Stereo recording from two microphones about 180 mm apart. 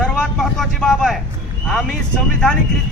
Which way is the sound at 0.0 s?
5° left (ahead or behind).